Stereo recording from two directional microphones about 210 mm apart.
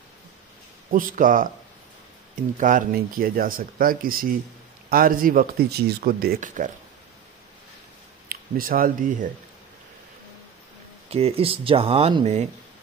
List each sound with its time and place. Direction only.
1.1 s speech: 40° right (ahead or behind)
2.5 s speech: 40° right (ahead or behind)
8.3 s speech: 45° right (ahead or behind)
11.1 s speech: 30° right (ahead or behind)